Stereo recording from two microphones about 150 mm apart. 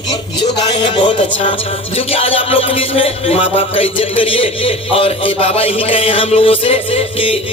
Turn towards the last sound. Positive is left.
turn(degrees=35)  # may be behind; listen again after turning